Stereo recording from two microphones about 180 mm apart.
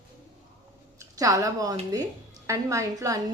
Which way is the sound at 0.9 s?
20° right (ahead or behind).